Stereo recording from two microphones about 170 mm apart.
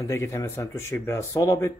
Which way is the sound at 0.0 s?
20° left (ahead or behind).